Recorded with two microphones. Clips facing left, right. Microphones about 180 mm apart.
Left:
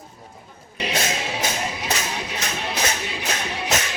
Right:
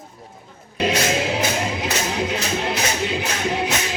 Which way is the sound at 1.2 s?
85° right.